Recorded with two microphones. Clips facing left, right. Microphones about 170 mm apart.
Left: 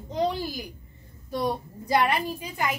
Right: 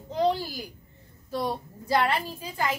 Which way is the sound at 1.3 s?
15° left (ahead or behind).